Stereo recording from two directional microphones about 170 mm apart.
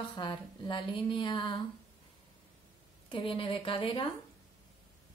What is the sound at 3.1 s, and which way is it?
A woman's voice, 30° left (ahead or behind).